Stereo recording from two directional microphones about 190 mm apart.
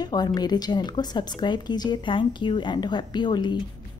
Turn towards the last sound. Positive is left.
turn(degrees=25)  # may be behind; listen again after turning